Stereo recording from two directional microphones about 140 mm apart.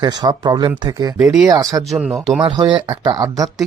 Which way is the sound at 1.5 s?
25° right (ahead or behind).